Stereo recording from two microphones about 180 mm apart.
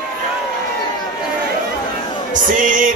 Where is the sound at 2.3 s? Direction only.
45° right (ahead or behind).